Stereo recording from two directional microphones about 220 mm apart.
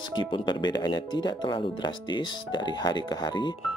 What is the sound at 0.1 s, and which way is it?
Speech, 20° left (ahead or behind).